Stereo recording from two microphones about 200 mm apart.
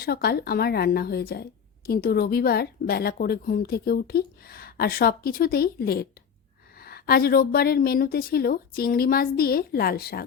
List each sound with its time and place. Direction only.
0.0 s a woman's voice: 50° left (ahead or behind)